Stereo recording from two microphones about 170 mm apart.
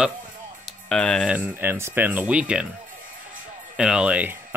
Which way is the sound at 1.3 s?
10° right (ahead or behind).